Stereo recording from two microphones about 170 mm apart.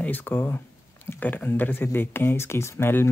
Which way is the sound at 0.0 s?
10° left (ahead or behind).